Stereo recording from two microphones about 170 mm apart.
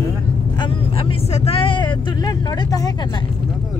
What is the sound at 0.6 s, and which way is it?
Speech, 35° left (ahead or behind).